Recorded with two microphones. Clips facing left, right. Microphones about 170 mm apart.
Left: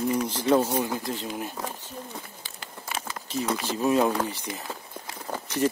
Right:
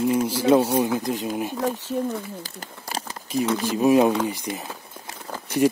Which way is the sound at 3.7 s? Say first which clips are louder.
Right 6 dB; 15° right (ahead or behind).